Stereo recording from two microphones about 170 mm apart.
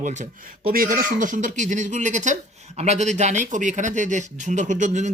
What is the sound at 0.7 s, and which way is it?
A man's voice, 55° right (ahead or behind).